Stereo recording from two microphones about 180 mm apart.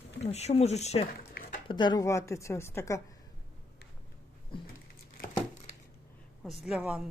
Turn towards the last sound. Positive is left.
turn(degrees=-5)  # may be behind; listen again after turning